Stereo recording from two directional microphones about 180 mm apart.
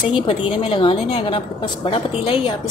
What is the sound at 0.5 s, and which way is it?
A woman's voice, 30° left (ahead or behind).